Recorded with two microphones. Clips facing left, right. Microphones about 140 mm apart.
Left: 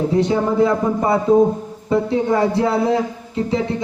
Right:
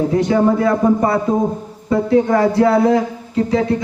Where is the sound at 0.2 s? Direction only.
25° left (ahead or behind).